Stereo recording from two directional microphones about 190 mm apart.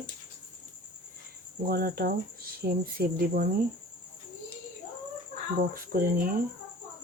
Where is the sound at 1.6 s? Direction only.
50° right (ahead or behind).